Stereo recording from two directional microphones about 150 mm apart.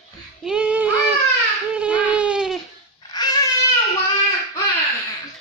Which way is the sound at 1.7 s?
10° right (ahead or behind).